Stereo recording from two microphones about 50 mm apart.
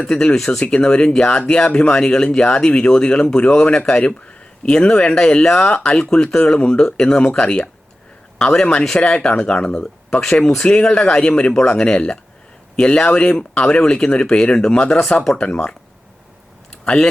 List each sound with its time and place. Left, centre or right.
0.0 s speech: centre
0.6 s speech: centre
16.8 s speech: centre